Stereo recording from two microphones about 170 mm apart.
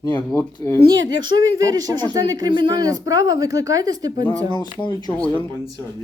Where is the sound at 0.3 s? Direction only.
15° left (ahead or behind).